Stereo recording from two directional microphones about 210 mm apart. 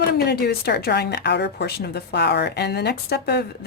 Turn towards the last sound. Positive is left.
turn(degrees=50)  # may be behind; listen again after turning